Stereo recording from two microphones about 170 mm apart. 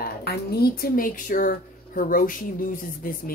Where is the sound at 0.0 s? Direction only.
70° left (ahead or behind).